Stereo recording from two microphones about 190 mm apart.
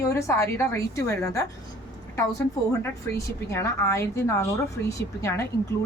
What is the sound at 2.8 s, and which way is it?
Speech, 15° left (ahead or behind).